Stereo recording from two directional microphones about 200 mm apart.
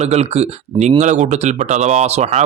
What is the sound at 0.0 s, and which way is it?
A man's voice, 30° right (ahead or behind).